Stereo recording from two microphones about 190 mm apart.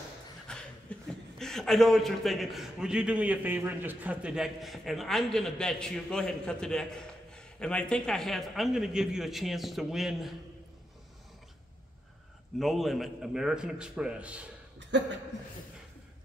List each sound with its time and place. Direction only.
0.5 s chuckle: 5° left (ahead or behind)
1.4 s a man's voice: centre (ahead or behind)
12.5 s a man's voice: centre (ahead or behind)
14.8 s speech: 70° right (ahead or behind)